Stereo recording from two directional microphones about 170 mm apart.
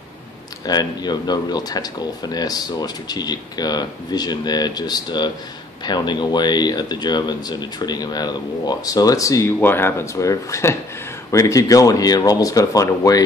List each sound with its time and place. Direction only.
0.7 s speech: 25° left (ahead or behind)